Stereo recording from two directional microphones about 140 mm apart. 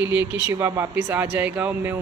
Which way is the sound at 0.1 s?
10° right (ahead or behind).